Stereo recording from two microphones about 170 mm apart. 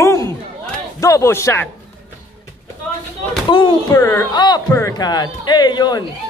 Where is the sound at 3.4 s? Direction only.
30° left (ahead or behind).